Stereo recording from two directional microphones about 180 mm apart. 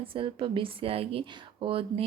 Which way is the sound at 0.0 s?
30° right (ahead or behind).